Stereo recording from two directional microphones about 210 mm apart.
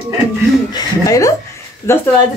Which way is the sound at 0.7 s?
15° left (ahead or behind).